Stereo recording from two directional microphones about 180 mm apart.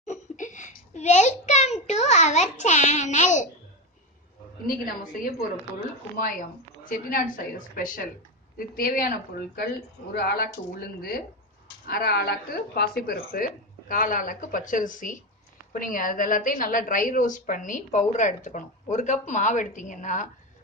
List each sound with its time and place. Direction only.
0.0 s a child's voice: 45° left (ahead or behind)
4.6 s a woman's voice: 55° left (ahead or behind)
6.8 s a woman's voice: 50° left (ahead or behind)
11.9 s a woman's voice: 60° left (ahead or behind); by 20.2 s 45° left (ahead or behind)